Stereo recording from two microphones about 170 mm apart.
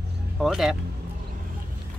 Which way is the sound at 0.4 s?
Centre (ahead or behind).